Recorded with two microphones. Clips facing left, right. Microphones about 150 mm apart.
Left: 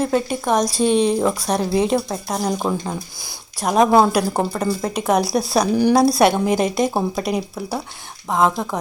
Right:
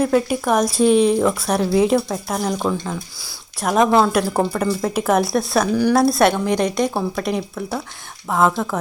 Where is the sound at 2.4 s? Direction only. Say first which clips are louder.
Even; 10° left (ahead or behind).